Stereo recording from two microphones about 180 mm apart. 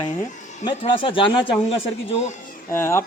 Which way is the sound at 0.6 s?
30° left (ahead or behind).